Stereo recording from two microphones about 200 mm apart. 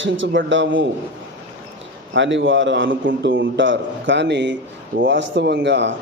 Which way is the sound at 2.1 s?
65° right (ahead or behind).